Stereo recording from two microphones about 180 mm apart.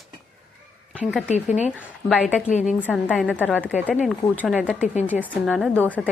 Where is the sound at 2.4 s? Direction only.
40° left (ahead or behind).